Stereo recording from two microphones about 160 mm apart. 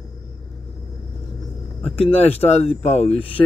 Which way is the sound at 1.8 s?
40° left (ahead or behind).